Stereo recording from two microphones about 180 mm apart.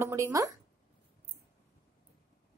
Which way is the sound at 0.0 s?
15° right (ahead or behind).